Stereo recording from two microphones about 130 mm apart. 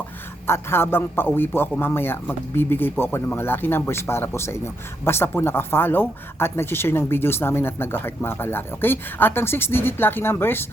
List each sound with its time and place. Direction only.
0.4 s speech: 20° left (ahead or behind)